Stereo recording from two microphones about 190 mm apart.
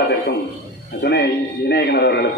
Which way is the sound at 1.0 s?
65° left (ahead or behind).